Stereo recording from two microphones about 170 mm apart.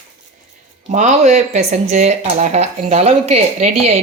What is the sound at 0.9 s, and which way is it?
Speech, 40° right (ahead or behind).